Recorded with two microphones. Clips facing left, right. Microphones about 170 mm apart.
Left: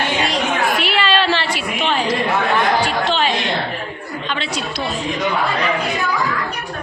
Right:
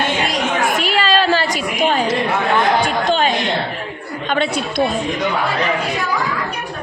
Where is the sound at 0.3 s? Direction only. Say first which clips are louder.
Even; 20° right (ahead or behind).